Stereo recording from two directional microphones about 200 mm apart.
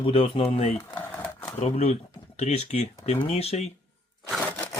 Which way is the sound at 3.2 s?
30° left (ahead or behind).